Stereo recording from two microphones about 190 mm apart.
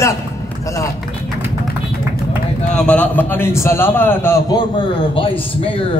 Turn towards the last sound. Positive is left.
turn(degrees=30)  # may be behind; listen again after turning